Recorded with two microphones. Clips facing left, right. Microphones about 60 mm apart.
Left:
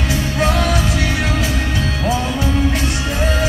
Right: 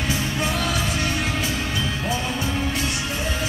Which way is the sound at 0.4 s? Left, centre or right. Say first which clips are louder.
Left 10 dB; left.